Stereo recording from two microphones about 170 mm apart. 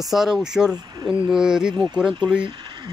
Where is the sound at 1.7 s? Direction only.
25° right (ahead or behind).